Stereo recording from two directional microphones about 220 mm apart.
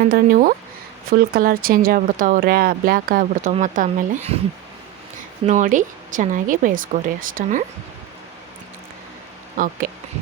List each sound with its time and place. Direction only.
0.0 s speech: 40° right (ahead or behind)
5.5 s speech: 35° right (ahead or behind)